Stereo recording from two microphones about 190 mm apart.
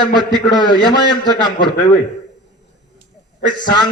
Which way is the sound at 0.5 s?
25° left (ahead or behind).